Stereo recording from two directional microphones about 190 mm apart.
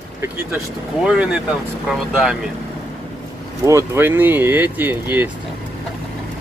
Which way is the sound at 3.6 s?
15° right (ahead or behind).